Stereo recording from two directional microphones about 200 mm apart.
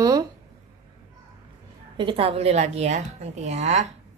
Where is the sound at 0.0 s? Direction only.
15° right (ahead or behind).